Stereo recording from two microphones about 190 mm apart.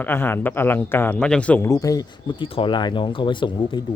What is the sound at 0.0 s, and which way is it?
A man's voice, 10° left (ahead or behind).